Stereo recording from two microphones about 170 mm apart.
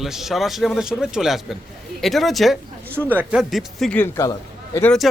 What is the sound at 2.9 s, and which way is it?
A man's voice, 10° right (ahead or behind).